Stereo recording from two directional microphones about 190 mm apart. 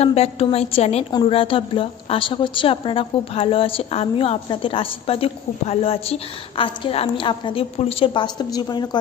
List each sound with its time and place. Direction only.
0.0 s a woman's voice: 35° left (ahead or behind)